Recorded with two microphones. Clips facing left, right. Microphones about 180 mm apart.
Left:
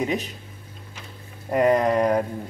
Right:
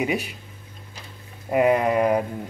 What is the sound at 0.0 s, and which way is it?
Speech, 10° right (ahead or behind).